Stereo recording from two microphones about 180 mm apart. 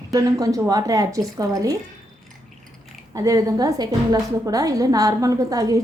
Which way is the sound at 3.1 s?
20° right (ahead or behind).